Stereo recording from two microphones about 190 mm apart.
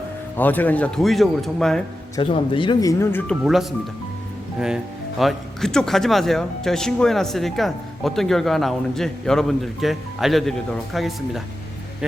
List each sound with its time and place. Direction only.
0.3 s speech: 10° left (ahead or behind)
2.1 s speech: 25° left (ahead or behind); by 3.3 s 10° left (ahead or behind)
3.4 s speech: centre (ahead or behind)
5.2 s speech: centre (ahead or behind)